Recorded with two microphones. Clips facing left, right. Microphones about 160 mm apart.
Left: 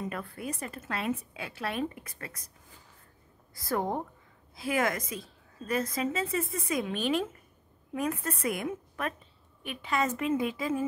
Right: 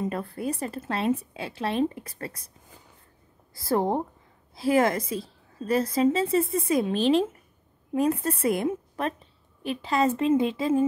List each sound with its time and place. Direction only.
0.1 s a woman's voice: 30° right (ahead or behind)
3.5 s a woman's voice: 30° right (ahead or behind)